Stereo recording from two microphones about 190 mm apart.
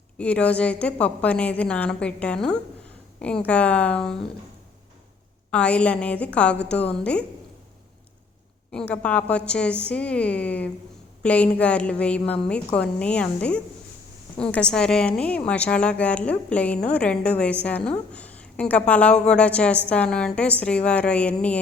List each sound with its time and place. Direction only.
0.2 s a woman's voice: 5° left (ahead or behind)
5.5 s a woman's voice: 5° left (ahead or behind)
8.7 s a woman's voice: 5° left (ahead or behind)